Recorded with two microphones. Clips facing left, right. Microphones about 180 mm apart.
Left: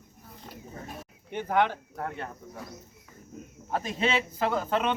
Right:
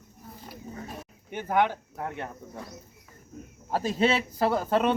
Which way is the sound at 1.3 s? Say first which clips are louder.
Right 1 dB; 10° right (ahead or behind).